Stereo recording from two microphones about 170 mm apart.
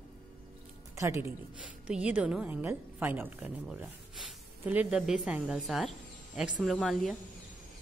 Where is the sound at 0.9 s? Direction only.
15° right (ahead or behind); by 7.1 s centre (ahead or behind).